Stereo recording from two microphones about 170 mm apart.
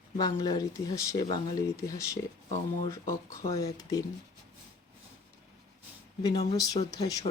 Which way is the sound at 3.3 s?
20° left (ahead or behind).